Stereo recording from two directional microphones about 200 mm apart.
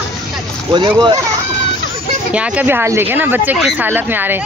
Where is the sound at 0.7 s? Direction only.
25° right (ahead or behind).